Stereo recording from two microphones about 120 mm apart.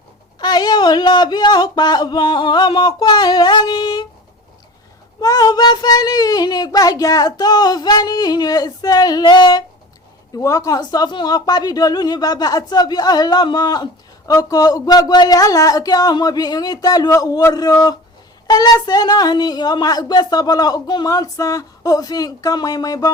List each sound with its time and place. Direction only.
0.3 s a woman's voice: 35° left (ahead or behind)
5.2 s a woman's voice: 30° left (ahead or behind)
10.3 s a woman's voice: 25° left (ahead or behind)